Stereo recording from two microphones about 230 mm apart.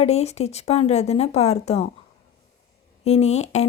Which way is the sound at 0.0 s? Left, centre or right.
Left.